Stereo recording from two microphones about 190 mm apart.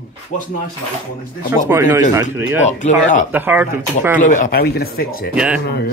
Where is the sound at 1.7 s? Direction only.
15° right (ahead or behind).